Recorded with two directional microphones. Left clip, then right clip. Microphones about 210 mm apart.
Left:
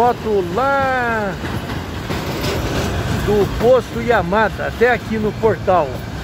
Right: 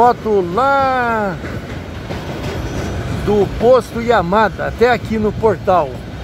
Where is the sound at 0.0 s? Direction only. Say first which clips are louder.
Right 3 dB; 25° right (ahead or behind).